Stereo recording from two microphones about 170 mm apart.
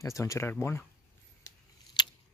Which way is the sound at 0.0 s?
20° left (ahead or behind).